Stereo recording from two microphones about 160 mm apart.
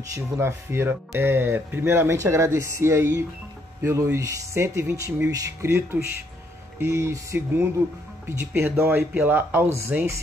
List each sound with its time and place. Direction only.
0.1 s speech: 15° right (ahead or behind)